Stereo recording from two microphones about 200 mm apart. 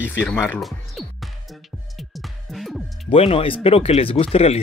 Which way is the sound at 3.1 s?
30° left (ahead or behind).